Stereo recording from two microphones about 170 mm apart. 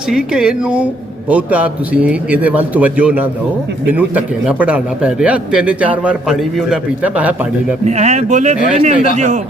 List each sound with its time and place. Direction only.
0.1 s a man's voice: 5° right (ahead or behind)
7.9 s a man's voice: 40° right (ahead or behind)